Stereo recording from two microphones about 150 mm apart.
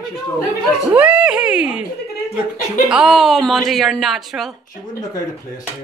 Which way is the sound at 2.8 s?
5° right (ahead or behind).